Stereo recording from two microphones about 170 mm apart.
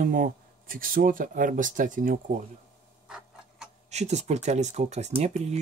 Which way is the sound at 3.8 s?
40° right (ahead or behind).